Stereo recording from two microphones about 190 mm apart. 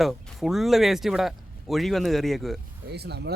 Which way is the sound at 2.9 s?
60° right (ahead or behind).